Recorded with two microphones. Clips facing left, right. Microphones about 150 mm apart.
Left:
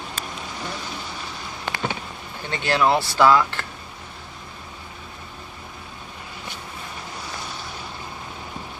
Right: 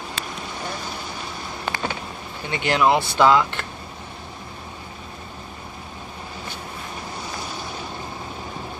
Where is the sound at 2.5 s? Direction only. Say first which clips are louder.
Right 1 dB; 15° right (ahead or behind).